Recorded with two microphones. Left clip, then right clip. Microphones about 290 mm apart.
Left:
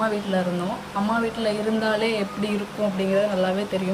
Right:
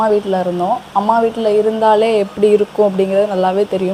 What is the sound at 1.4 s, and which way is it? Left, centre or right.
A woman's voice, centre.